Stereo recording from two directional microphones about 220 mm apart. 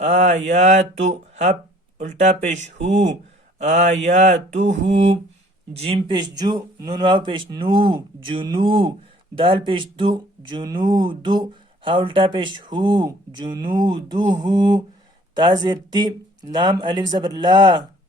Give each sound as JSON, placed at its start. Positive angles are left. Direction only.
{"t": 0.0, "sound": "mantra", "side_deg": -30}
{"t": 5.7, "sound": "speech", "side_deg": -25}